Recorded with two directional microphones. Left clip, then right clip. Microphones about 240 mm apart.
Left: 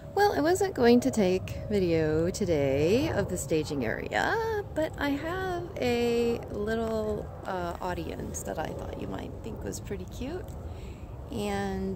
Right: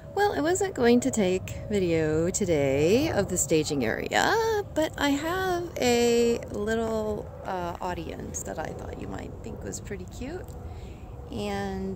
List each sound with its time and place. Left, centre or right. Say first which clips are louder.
0.1 s a woman's voice: even; centre